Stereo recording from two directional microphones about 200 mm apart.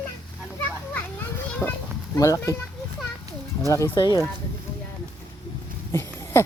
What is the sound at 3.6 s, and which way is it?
Speech, 15° left (ahead or behind).